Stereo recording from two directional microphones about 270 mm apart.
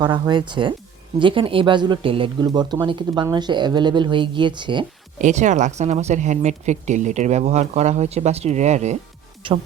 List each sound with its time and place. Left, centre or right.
0.0 s speech: centre